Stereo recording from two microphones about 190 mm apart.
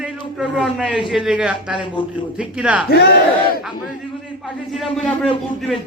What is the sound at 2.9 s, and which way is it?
Battle cry, 55° left (ahead or behind).